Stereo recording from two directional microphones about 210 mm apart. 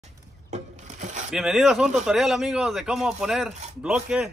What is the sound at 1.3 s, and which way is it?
A man's voice, centre (ahead or behind).